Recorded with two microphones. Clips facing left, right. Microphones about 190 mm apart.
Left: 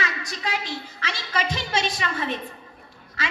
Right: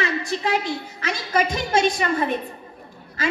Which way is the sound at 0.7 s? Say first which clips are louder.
Right 6 dB; 50° right (ahead or behind).